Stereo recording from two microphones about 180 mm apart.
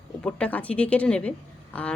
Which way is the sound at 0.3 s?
5° left (ahead or behind).